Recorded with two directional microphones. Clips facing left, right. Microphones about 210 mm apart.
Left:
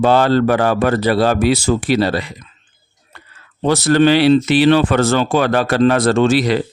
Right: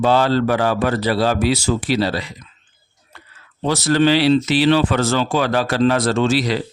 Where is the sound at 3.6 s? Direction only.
55° left (ahead or behind).